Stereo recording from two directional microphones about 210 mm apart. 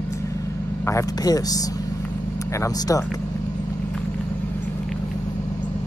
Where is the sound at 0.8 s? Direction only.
15° left (ahead or behind).